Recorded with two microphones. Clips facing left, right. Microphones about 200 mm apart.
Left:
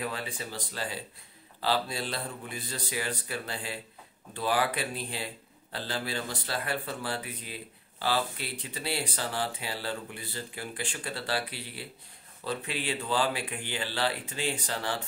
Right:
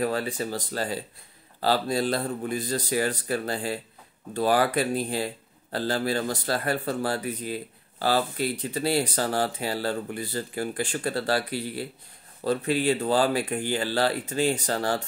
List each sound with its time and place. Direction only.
0.0 s a man's voice: 40° right (ahead or behind)